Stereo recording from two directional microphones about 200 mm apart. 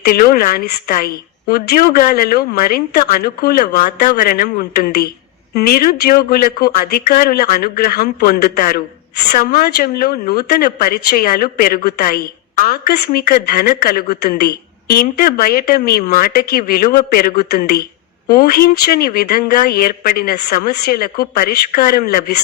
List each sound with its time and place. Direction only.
0.0 s speech: 45° left (ahead or behind)